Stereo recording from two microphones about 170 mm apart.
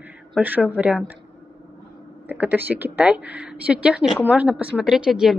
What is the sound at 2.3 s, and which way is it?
A woman's voice, 10° right (ahead or behind).